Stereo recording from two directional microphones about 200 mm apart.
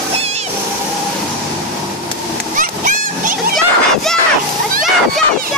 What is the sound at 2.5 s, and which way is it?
Splash, 40° right (ahead or behind).